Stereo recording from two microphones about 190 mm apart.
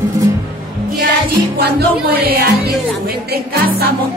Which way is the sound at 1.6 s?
55° right (ahead or behind).